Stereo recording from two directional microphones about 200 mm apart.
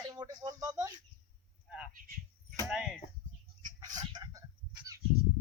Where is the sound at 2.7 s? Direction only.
Centre (ahead or behind).